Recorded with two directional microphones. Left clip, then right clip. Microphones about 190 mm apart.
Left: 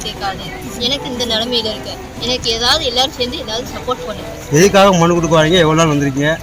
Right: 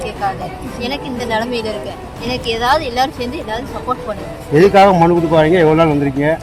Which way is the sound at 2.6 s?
10° right (ahead or behind).